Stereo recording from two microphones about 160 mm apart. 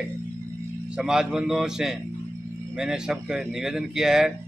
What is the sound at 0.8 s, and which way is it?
Speech, 5° right (ahead or behind).